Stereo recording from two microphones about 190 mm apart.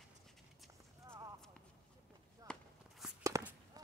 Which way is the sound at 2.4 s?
20° right (ahead or behind).